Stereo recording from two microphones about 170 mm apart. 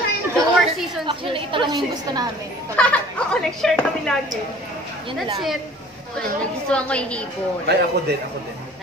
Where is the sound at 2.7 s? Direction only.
5° left (ahead or behind).